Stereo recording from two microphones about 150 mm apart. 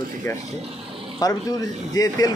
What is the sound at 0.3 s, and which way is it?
Speech, 15° left (ahead or behind).